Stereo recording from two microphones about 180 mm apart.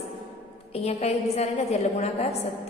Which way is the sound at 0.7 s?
35° left (ahead or behind).